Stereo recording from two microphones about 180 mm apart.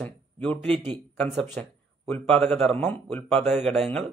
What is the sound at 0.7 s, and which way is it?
Speech, 30° right (ahead or behind).